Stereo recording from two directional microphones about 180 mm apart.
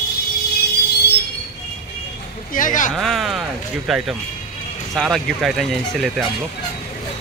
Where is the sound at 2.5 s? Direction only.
45° left (ahead or behind).